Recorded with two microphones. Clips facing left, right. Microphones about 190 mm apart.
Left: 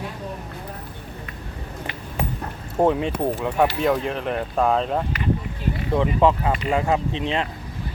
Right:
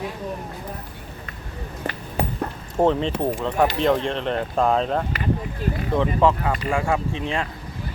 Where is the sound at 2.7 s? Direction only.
10° left (ahead or behind).